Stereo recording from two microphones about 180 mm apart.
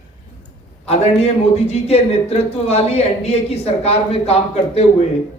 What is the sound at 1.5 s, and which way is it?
A man's voice, 35° left (ahead or behind).